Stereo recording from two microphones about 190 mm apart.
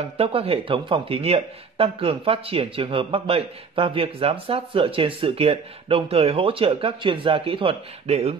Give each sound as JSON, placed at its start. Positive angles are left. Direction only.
{"t": 0.2, "sound": "speech", "side_deg": -30}